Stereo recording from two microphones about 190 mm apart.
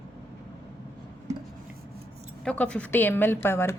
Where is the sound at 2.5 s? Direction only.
5° left (ahead or behind).